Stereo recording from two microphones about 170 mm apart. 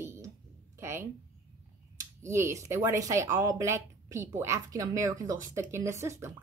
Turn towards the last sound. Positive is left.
turn(degrees=-15)  # may be behind; listen again after turning